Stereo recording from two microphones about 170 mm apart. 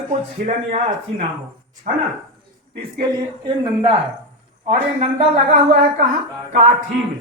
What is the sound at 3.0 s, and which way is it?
A woman's voice, 25° right (ahead or behind).